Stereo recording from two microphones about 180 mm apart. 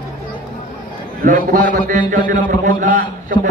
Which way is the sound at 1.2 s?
50° right (ahead or behind).